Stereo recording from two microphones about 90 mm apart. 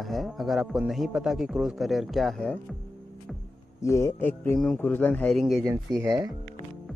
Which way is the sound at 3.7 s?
30° left (ahead or behind).